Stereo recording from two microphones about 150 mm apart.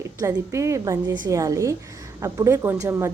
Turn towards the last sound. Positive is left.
turn(degrees=-20)  # may be behind; listen again after turning